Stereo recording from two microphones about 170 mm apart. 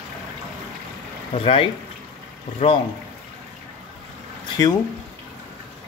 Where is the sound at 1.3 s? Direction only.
35° left (ahead or behind).